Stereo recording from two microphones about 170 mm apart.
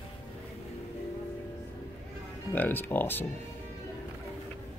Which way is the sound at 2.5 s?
10° left (ahead or behind).